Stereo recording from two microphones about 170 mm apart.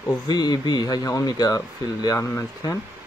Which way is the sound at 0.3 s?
25° left (ahead or behind).